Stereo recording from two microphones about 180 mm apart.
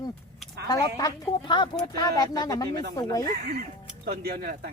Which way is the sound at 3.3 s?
55° right (ahead or behind).